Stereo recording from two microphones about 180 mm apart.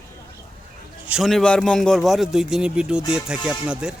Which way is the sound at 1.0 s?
5° right (ahead or behind).